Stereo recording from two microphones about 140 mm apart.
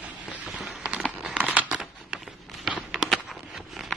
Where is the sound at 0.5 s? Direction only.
Centre (ahead or behind).